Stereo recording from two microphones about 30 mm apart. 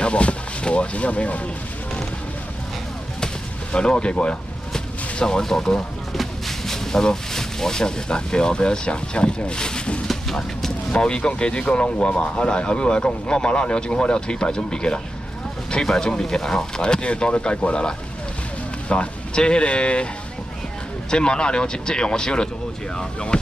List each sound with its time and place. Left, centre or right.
0.0 s speech: left
3.7 s speech: left
4.7 s artillery fire: left
6.1 s speech: centre; by 9.8 s left
10.9 s speech: left
16.0 s speech: left
18.9 s speech: left
21.1 s speech: left